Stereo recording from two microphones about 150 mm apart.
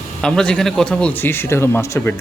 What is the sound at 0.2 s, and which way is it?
Speech, 5° left (ahead or behind).